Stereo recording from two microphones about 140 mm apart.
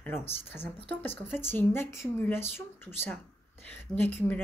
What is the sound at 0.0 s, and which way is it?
A woman's voice, 15° left (ahead or behind).